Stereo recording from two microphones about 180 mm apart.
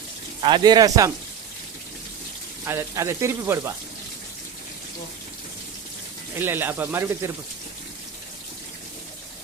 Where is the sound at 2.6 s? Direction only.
15° right (ahead or behind).